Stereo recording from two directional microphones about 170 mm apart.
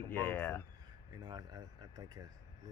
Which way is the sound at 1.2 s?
25° right (ahead or behind).